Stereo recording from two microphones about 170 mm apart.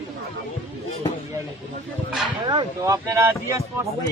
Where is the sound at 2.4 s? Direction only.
25° right (ahead or behind).